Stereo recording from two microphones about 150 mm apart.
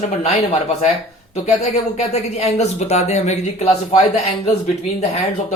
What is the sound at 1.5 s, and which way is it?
Speech, 45° left (ahead or behind).